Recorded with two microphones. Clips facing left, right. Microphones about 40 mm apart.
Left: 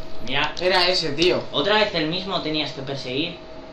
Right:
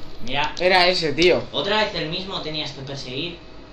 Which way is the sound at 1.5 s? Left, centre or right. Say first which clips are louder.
Left 2 dB; centre.